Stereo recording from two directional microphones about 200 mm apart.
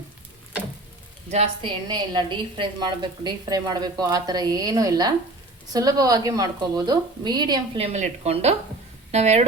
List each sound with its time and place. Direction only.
1.3 s a woman's voice: 30° right (ahead or behind)
7.9 s speech: 35° right (ahead or behind)